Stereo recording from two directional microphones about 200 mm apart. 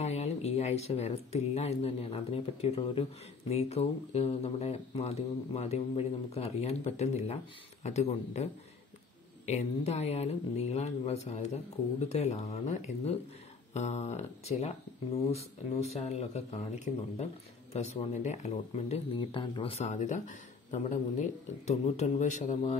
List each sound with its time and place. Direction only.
0.0 s speech: 35° left (ahead or behind)
9.5 s speech: 35° left (ahead or behind)
16.1 s speech: 30° left (ahead or behind)